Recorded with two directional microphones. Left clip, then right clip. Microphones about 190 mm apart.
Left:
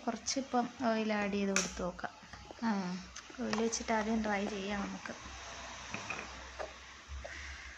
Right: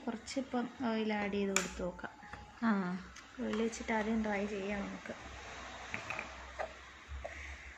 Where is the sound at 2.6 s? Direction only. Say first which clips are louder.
Right 2 dB; 15° right (ahead or behind).